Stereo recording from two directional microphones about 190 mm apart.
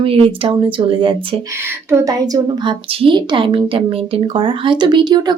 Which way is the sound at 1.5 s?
15° right (ahead or behind).